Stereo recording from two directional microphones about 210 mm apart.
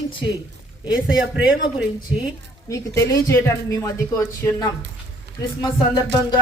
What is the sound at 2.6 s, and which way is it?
A woman's voice, 15° left (ahead or behind).